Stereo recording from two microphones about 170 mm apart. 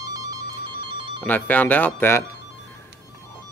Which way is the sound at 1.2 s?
10° left (ahead or behind).